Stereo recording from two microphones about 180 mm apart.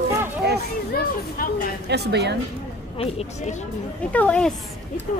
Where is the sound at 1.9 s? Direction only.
65° right (ahead or behind).